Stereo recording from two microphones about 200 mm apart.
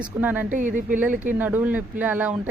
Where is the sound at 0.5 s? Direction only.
40° right (ahead or behind).